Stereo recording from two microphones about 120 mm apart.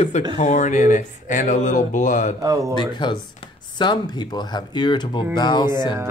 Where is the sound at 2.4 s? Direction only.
30° right (ahead or behind).